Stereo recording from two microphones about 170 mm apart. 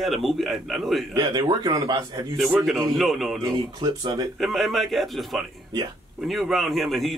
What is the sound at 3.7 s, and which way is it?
Speech, 25° right (ahead or behind).